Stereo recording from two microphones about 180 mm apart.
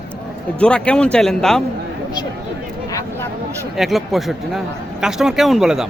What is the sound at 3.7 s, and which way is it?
Speech, centre (ahead or behind).